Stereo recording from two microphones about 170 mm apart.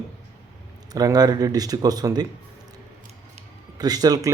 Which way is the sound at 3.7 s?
20° right (ahead or behind).